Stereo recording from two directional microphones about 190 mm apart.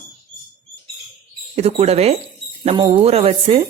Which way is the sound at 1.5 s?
35° right (ahead or behind).